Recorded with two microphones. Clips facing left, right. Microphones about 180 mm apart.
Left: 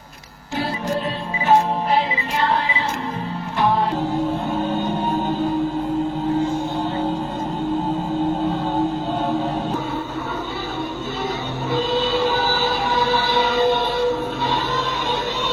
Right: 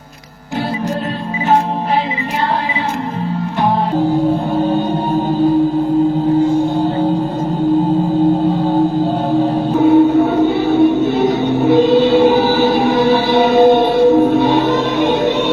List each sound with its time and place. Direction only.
9.8 s music: 60° right (ahead or behind)